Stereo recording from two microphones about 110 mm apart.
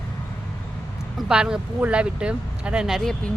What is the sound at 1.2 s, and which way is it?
Speech, 5° right (ahead or behind).